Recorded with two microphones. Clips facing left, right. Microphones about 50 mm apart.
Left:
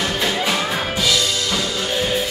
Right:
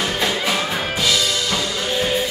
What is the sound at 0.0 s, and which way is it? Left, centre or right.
Music, centre.